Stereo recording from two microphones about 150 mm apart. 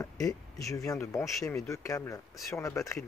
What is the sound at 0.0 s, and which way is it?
Speech, 20° left (ahead or behind).